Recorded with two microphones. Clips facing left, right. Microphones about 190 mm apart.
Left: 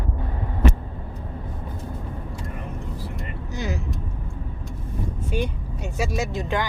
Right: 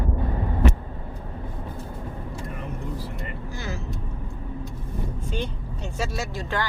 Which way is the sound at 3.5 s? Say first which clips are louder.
Left 7 dB; 15° left (ahead or behind).